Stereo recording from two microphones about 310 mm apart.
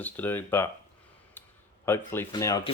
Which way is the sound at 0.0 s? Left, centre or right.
Centre.